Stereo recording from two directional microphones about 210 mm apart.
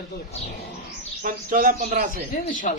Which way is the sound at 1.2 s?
40° right (ahead or behind).